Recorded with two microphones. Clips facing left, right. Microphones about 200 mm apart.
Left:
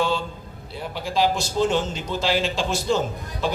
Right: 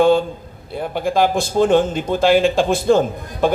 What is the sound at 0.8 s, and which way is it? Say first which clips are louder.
Speech: right 6 dB; 55° right (ahead or behind).